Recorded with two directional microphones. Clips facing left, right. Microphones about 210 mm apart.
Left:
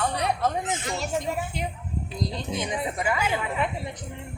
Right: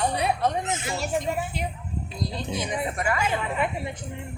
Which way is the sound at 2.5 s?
Centre (ahead or behind).